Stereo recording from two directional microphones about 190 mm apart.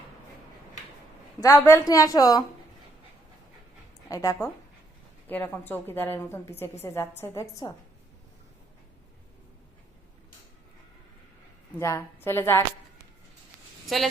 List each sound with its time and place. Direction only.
1.4 s a woman's voice: 15° left (ahead or behind)
4.1 s a woman's voice: 15° left (ahead or behind)
11.8 s a woman's voice: 15° left (ahead or behind)
13.8 s speech: centre (ahead or behind)